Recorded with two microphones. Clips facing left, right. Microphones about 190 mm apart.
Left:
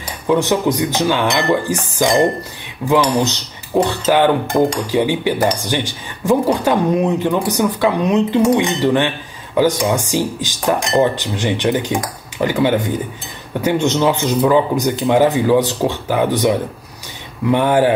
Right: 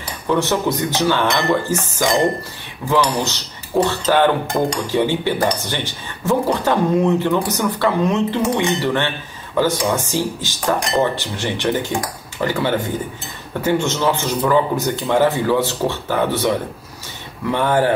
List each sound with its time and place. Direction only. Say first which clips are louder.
0.3 s speech: left 3 dB; 15° left (ahead or behind)